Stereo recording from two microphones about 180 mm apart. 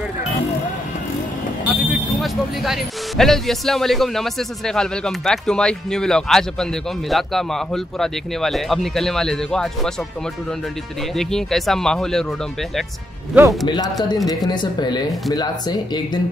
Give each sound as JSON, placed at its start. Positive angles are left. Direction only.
{"t": 1.9, "sound": "speech", "side_deg": 0}
{"t": 11.1, "sound": "speech", "side_deg": 0}
{"t": 13.3, "sound": "speech", "side_deg": -10}
{"t": 14.0, "sound": "speech", "side_deg": 20}